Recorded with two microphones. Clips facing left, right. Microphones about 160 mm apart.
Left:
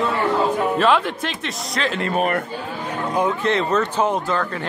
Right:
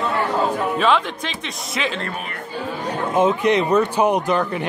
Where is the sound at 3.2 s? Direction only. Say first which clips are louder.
Right 4 dB; 20° right (ahead or behind).